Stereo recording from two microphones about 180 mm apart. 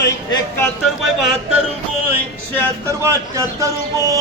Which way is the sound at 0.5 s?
Centre (ahead or behind).